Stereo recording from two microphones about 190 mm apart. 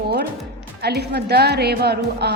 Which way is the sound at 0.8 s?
60° right (ahead or behind).